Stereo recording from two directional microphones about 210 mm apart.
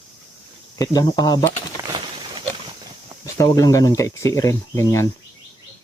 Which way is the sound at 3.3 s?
15° left (ahead or behind).